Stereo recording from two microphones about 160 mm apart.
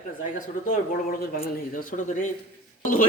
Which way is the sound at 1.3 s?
65° left (ahead or behind).